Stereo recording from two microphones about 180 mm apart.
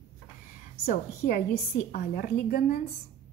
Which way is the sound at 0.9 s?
50° left (ahead or behind).